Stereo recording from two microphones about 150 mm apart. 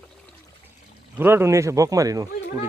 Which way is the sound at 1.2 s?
15° right (ahead or behind).